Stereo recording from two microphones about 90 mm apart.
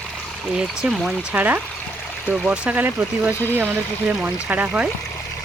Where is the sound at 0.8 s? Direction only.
5° right (ahead or behind).